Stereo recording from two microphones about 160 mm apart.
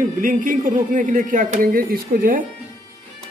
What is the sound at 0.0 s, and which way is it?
A man's voice, 55° right (ahead or behind).